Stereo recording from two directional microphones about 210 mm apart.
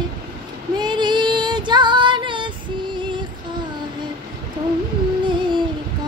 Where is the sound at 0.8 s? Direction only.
20° right (ahead or behind).